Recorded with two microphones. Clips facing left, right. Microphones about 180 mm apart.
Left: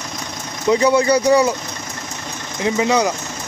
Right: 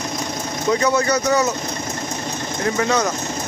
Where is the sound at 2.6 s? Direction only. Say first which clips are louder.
Left 3 dB; 15° left (ahead or behind).